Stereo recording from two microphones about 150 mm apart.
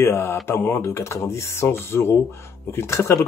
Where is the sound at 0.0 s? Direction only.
15° left (ahead or behind).